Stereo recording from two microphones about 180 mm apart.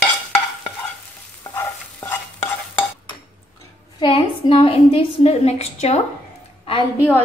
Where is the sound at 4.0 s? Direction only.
30° left (ahead or behind).